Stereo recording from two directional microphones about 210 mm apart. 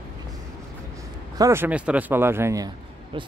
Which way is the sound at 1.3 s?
15° right (ahead or behind).